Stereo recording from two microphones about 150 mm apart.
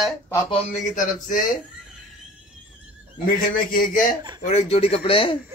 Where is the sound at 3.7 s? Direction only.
70° left (ahead or behind).